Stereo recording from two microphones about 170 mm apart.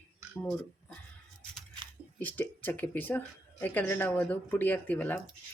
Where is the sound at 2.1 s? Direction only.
10° left (ahead or behind).